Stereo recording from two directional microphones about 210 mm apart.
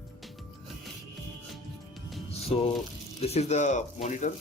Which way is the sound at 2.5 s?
30° left (ahead or behind).